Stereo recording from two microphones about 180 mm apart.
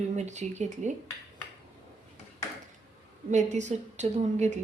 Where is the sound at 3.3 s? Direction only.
40° right (ahead or behind).